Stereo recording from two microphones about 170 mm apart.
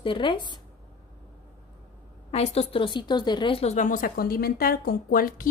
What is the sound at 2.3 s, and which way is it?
Speech, 35° left (ahead or behind).